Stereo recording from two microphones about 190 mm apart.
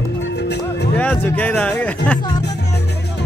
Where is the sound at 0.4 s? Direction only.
60° left (ahead or behind).